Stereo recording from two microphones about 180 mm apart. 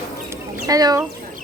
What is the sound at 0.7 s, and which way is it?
Speech, 20° right (ahead or behind).